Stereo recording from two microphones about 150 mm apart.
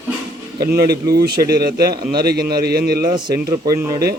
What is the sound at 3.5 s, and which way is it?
Speech, 20° right (ahead or behind).